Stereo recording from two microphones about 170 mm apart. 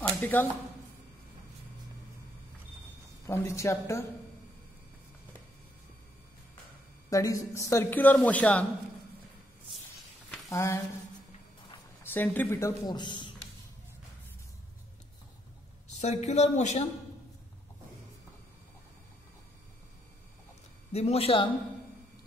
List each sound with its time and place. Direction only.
0.2 s a man's voice: 10° left (ahead or behind)
3.3 s a man's voice: 15° left (ahead or behind)
7.1 s a man's voice: 20° left (ahead or behind)
10.5 s speech: 15° left (ahead or behind)
12.0 s speech: 10° left (ahead or behind); by 13.3 s 25° left (ahead or behind)
16.0 s speech: 40° left (ahead or behind)
20.9 s speech: 40° left (ahead or behind)